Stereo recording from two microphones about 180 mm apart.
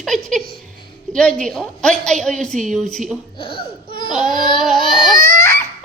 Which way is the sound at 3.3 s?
30° left (ahead or behind).